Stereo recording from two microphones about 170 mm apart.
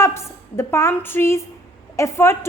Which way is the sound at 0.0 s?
15° left (ahead or behind).